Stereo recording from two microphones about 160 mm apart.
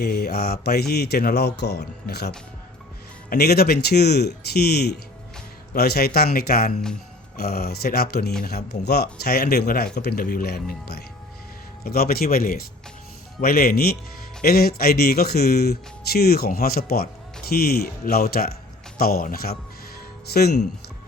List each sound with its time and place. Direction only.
0.0 s speech: 80° left
9.2 s speech: 80° left
11.8 s speech: 75° left (ahead or behind)
20.2 s speech: 85° left